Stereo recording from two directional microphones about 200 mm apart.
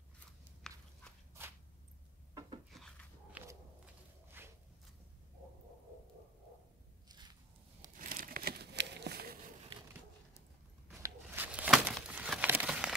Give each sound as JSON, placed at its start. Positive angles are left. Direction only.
{"t": 0.7, "sound": "a sound", "side_deg": 0}
{"t": 2.7, "sound": "dog", "side_deg": 0}
{"t": 4.4, "sound": "walk", "side_deg": -10}
{"t": 7.1, "sound": "a sound", "side_deg": -20}
{"t": 8.0, "sound": "crumpling", "side_deg": -45}
{"t": 11.0, "sound": "crumpling", "side_deg": -10}